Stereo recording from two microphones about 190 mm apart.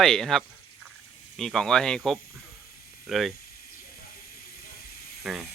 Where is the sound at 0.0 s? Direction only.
Centre (ahead or behind).